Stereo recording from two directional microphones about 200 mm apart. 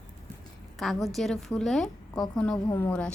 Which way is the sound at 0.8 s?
Centre (ahead or behind).